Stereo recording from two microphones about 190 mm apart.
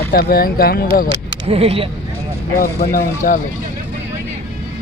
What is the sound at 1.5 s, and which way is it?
Speech, 30° right (ahead or behind).